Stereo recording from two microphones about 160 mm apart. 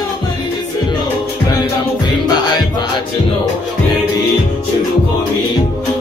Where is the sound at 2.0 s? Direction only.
25° left (ahead or behind).